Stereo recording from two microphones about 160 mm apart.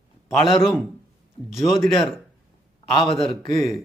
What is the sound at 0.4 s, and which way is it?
Speech, 30° left (ahead or behind).